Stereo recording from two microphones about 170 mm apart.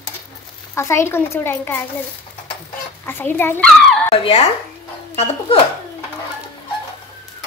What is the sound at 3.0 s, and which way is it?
Speech, 10° left (ahead or behind).